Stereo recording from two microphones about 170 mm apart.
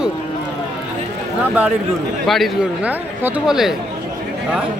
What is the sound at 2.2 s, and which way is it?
Speech, centre (ahead or behind).